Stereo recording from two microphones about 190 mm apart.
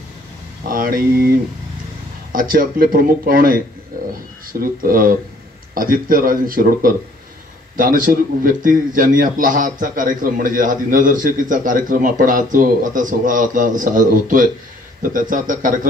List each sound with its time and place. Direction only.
0.7 s a man's voice: 45° right (ahead or behind)
2.3 s a man's voice: 45° right (ahead or behind)
3.9 s a sound: 50° right (ahead or behind)
4.5 s a man's voice: 50° right (ahead or behind)